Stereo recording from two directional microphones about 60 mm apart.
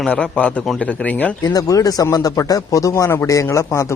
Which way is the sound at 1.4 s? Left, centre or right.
Left.